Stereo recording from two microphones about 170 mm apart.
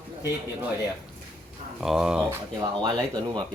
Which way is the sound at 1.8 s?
5° right (ahead or behind).